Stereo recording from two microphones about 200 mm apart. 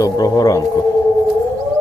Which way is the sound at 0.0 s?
20° left (ahead or behind).